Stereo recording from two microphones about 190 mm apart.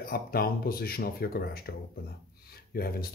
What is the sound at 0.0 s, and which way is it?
Speech, 50° left (ahead or behind).